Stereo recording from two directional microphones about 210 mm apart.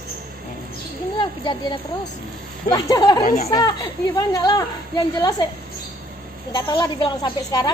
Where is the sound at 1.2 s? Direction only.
20° left (ahead or behind).